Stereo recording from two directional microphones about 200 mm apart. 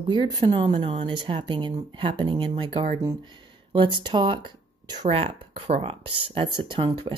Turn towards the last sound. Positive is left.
turn(degrees=-25)  # may be behind; listen again after turning